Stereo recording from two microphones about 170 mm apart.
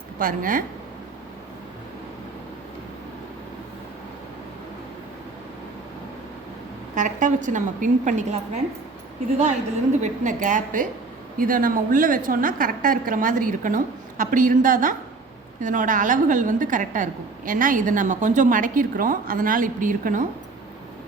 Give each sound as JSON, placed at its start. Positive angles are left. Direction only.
{"t": 0.2, "sound": "a woman's voice", "side_deg": -55}
{"t": 6.9, "sound": "a woman's voice", "side_deg": -50}
{"t": 10.0, "sound": "a woman's voice", "side_deg": -50}